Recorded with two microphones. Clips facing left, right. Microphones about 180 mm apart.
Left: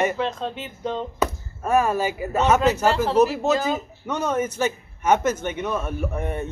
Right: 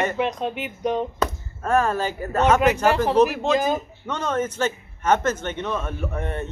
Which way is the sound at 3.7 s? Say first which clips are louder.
Left 1 dB; 10° left (ahead or behind).